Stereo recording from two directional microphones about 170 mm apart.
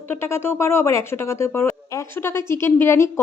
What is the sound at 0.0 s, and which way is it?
Speech, 15° left (ahead or behind).